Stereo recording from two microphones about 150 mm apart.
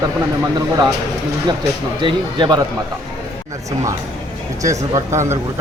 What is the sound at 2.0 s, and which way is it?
Speech, 30° right (ahead or behind).